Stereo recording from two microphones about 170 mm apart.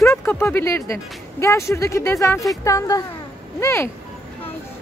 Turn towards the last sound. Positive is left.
turn(degrees=15)  # may be behind; listen again after turning